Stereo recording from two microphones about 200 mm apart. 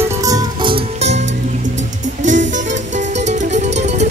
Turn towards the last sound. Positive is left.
turn(degrees=-35)  # may be behind; listen again after turning